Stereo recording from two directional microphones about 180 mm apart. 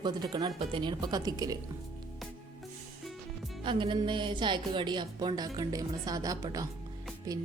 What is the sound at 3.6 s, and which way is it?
Speech, 25° right (ahead or behind).